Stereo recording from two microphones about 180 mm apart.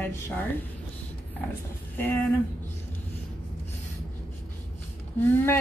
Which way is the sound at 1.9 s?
10° left (ahead or behind).